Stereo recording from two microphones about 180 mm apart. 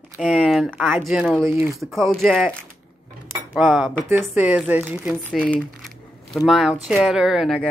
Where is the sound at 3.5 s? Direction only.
Centre (ahead or behind).